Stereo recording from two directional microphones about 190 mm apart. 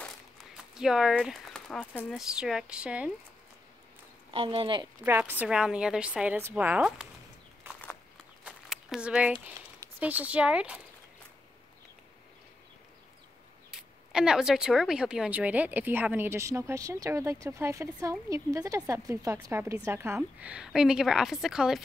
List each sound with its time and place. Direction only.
0.0 s speech: centre (ahead or behind)
4.3 s speech: 30° right (ahead or behind)
5.0 s speech: 10° right (ahead or behind)
7.7 s a sound: 10° right (ahead or behind)
9.9 s speech: 10° right (ahead or behind)
13.7 s speech: 5° right (ahead or behind)